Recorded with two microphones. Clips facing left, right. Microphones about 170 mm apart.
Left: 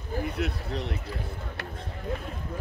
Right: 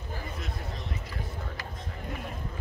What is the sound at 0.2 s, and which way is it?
Speech, 70° left (ahead or behind).